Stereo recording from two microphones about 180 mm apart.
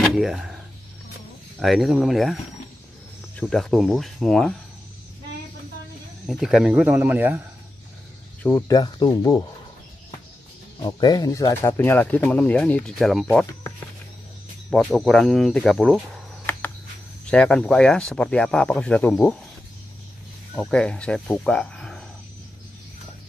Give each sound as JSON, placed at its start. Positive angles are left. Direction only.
{"t": 0.0, "sound": "speech", "side_deg": 0}
{"t": 1.6, "sound": "speech", "side_deg": 0}
{"t": 3.3, "sound": "speech", "side_deg": 5}
{"t": 6.2, "sound": "speech", "side_deg": 0}
{"t": 8.4, "sound": "speech", "side_deg": 10}
{"t": 8.6, "sound": "speech", "side_deg": 20}
{"t": 10.8, "sound": "speech", "side_deg": 20}
{"t": 17.3, "sound": "speech", "side_deg": 5}
{"t": 20.5, "sound": "speech", "side_deg": 5}